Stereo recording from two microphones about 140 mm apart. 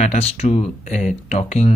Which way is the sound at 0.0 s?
50° left (ahead or behind).